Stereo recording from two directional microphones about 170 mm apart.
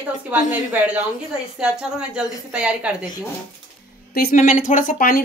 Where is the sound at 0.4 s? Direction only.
50° left (ahead or behind).